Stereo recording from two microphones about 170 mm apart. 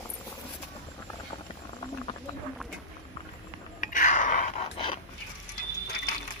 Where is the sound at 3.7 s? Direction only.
50° left (ahead or behind).